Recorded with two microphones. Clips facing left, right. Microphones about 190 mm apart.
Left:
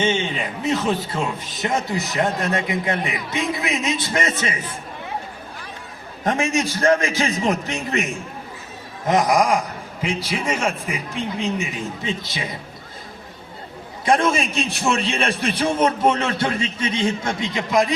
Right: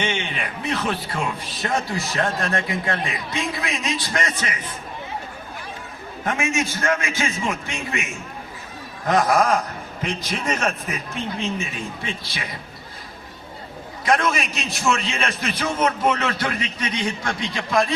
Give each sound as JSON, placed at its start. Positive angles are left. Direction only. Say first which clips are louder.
{"t": 0.6, "sound": "a man's voice", "louder": "left 4 dB", "side_deg": 20}
{"t": 6.2, "sound": "a man's voice", "louder": "left 3 dB", "side_deg": 35}
{"t": 9.0, "sound": "a man's voice", "louder": "left 1 dB", "side_deg": 20}
{"t": 14.0, "sound": "a man's voice", "louder": "left 3 dB", "side_deg": 30}